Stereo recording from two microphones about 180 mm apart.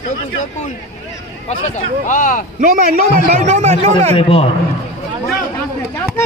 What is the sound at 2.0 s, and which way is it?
Speech, 45° left (ahead or behind).